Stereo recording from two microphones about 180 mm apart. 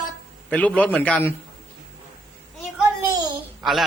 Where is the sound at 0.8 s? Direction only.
10° left (ahead or behind).